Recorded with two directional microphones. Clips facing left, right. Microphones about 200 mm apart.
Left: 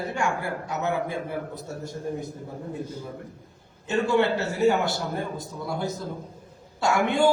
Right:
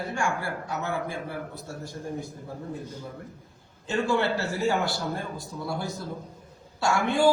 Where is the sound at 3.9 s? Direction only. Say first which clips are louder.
Left 3 dB; 20° left (ahead or behind).